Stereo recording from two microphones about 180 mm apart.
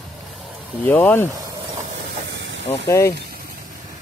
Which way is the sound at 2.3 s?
90° right.